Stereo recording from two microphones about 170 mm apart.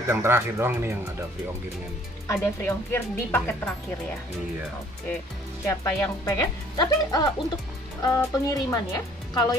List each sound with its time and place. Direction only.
0.1 s speech: 15° right (ahead or behind)
2.2 s speech: 15° left (ahead or behind)
5.7 s speech: 20° left (ahead or behind)